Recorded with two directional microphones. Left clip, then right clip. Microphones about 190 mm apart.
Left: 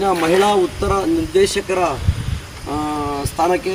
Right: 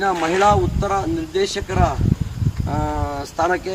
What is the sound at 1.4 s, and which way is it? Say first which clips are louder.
Speech: left 6 dB; 30° left (ahead or behind).